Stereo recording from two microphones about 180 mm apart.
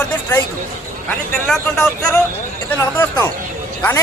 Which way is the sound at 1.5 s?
5° left (ahead or behind).